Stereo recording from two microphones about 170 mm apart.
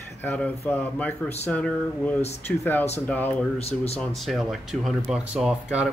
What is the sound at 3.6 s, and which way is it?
Speech, 35° left (ahead or behind).